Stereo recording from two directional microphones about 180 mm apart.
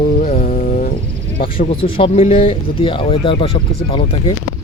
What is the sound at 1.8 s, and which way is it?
Speech, 30° left (ahead or behind).